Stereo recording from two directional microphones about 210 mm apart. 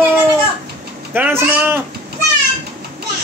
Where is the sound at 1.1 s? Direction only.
10° right (ahead or behind).